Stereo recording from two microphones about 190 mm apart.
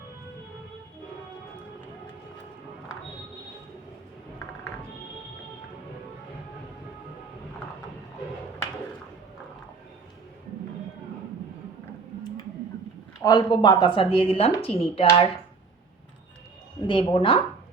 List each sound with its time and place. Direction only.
13.2 s speech: 20° left (ahead or behind)
16.8 s speech: 25° left (ahead or behind)